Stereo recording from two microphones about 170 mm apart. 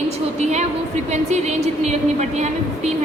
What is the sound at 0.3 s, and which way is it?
A woman's voice, 40° right (ahead or behind).